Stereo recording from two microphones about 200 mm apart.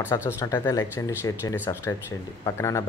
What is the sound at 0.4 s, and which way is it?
Speech, 15° left (ahead or behind).